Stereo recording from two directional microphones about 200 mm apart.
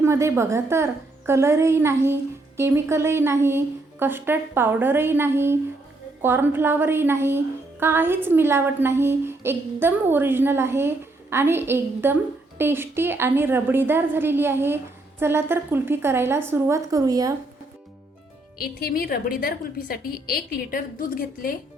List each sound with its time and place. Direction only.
0.0 s a woman's voice: 15° right (ahead or behind)
18.6 s a woman's voice: 50° left (ahead or behind)